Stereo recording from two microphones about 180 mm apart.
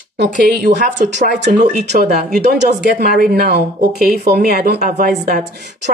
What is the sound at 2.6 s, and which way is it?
Speech, 55° right (ahead or behind).